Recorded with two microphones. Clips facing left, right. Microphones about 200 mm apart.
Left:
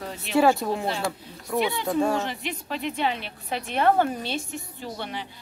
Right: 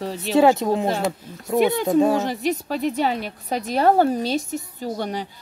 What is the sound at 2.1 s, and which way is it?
A woman's voice, 40° right (ahead or behind).